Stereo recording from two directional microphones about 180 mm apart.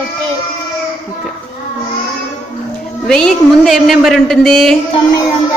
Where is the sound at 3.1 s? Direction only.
5° left (ahead or behind).